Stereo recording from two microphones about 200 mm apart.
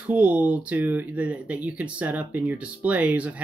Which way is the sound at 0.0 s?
5° right (ahead or behind).